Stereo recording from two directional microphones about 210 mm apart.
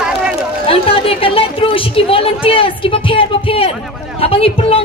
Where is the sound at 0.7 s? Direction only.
25° left (ahead or behind).